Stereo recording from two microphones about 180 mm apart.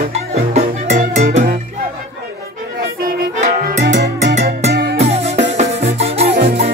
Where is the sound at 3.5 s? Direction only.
50° right (ahead or behind).